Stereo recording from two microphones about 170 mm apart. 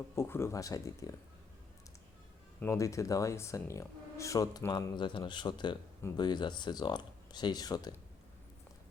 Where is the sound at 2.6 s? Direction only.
15° left (ahead or behind).